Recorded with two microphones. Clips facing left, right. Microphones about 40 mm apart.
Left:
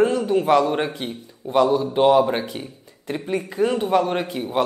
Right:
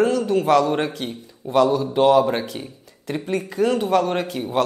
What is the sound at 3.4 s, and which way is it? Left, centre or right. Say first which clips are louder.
A woman's voice: right 1 dB; centre.